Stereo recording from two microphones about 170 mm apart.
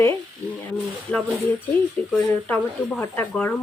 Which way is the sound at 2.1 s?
10° left (ahead or behind).